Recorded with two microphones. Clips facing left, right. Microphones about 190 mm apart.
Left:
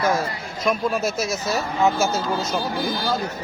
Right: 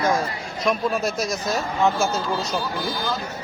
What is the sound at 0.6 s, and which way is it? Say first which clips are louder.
Speech: left 1 dB; centre (ahead or behind).